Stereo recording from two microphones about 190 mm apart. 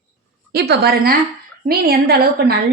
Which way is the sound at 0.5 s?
55° right (ahead or behind).